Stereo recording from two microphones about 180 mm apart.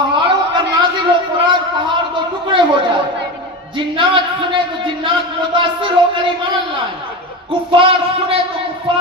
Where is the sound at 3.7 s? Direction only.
25° right (ahead or behind).